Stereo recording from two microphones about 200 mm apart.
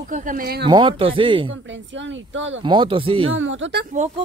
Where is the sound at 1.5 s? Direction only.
65° right (ahead or behind).